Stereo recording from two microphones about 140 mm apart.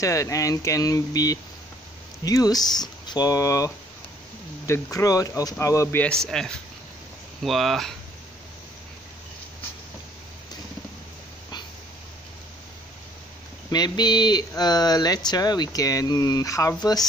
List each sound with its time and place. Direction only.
0.0 s speech: 25° left (ahead or behind)
6.2 s speech: 5° left (ahead or behind)
13.7 s speech: 30° left (ahead or behind)